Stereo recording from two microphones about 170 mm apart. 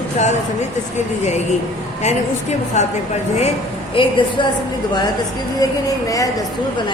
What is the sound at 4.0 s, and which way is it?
Speech, 30° left (ahead or behind).